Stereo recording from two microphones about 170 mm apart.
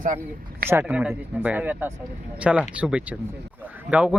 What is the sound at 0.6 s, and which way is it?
Speech, 10° right (ahead or behind).